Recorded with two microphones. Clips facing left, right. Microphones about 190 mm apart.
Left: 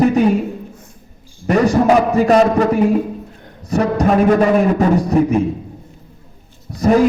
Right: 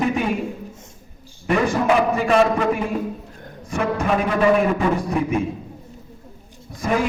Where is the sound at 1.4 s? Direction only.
40° left (ahead or behind).